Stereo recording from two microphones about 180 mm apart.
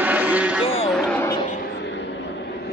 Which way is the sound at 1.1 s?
10° left (ahead or behind).